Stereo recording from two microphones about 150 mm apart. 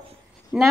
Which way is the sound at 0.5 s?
5° right (ahead or behind).